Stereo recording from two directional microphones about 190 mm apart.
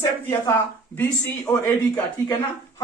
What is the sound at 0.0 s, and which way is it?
A man's voice, 15° left (ahead or behind).